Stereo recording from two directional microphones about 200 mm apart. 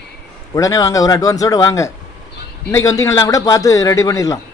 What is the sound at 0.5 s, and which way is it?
A man's voice, 15° left (ahead or behind).